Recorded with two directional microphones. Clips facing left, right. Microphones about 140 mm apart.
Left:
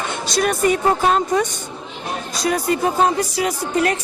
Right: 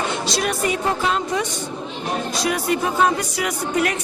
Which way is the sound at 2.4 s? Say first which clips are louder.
Left 4 dB; 40° left (ahead or behind).